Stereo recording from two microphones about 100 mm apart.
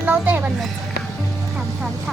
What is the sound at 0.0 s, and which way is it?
Music, 20° right (ahead or behind).